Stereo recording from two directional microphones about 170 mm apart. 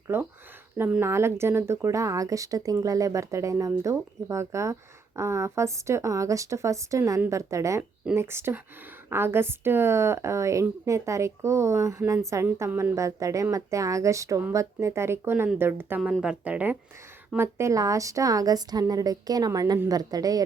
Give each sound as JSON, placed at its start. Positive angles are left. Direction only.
{"t": 0.1, "sound": "a woman's voice", "side_deg": -10}